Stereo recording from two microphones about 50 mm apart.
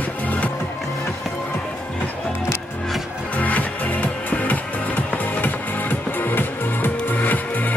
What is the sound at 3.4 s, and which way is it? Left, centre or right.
Music, left.